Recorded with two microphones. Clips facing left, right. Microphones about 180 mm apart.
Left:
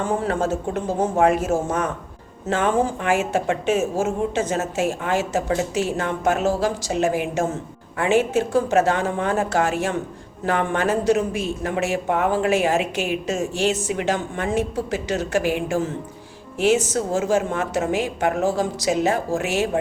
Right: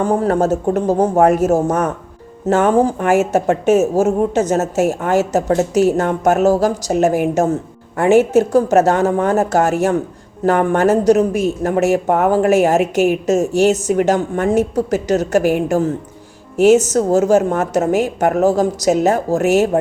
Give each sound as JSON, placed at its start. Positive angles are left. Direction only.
{"t": 0.0, "sound": "speech", "side_deg": -40}